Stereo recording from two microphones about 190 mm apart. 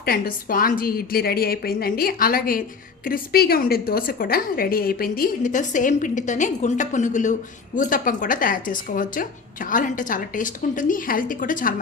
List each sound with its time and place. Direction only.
0.0 s a woman's voice: 50° left (ahead or behind)